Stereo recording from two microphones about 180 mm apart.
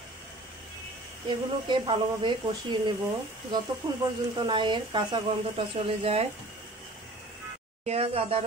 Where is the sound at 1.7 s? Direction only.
25° right (ahead or behind).